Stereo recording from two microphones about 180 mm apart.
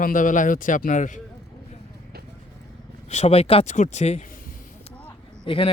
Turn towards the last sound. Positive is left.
turn(degrees=30)  # may be behind; listen again after turning